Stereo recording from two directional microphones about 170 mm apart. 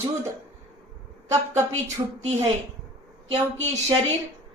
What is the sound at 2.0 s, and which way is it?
Speech, 25° right (ahead or behind).